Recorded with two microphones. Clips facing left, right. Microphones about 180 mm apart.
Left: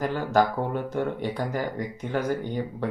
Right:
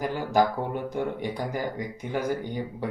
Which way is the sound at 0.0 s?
15° right (ahead or behind).